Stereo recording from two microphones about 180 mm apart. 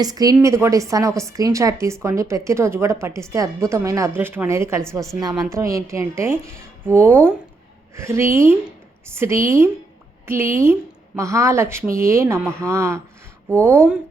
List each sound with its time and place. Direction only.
0.0 s a woman's voice: 20° right (ahead or behind)